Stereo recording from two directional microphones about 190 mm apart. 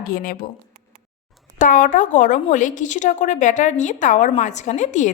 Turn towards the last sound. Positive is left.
turn(degrees=40)  # may be behind; listen again after turning